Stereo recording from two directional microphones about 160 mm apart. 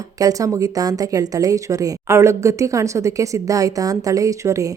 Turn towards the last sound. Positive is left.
turn(degrees=-20)  # may be behind; listen again after turning